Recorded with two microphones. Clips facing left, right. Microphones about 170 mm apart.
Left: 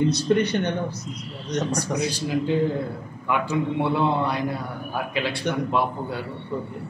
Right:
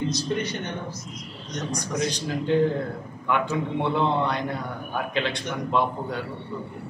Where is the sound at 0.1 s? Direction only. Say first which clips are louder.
Left 6 dB; 65° left (ahead or behind).